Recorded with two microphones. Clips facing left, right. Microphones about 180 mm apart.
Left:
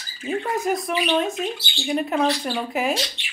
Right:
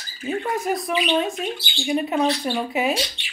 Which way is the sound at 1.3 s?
Centre (ahead or behind).